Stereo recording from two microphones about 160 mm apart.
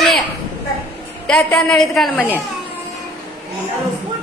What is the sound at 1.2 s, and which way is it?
A woman's voice, 5° left (ahead or behind).